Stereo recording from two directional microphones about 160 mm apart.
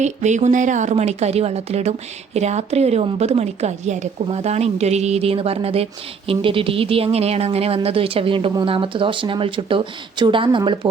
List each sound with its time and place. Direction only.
0.0 s speech: 45° right (ahead or behind); by 10.8 s 30° right (ahead or behind)